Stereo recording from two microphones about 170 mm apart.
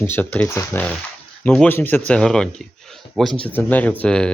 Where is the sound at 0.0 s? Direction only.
10° left (ahead or behind).